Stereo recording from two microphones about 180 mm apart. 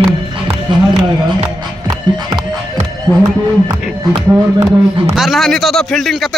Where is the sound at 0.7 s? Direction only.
25° right (ahead or behind).